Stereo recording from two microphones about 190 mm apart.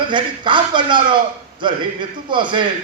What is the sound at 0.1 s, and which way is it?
A man's voice, 25° right (ahead or behind).